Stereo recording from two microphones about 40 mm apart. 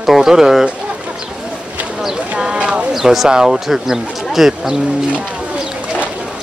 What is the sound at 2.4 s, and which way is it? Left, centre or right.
Speech, right.